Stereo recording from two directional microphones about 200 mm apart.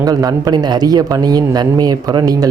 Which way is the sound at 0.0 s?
20° right (ahead or behind).